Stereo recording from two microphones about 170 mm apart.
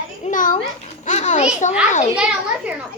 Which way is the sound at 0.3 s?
50° left (ahead or behind).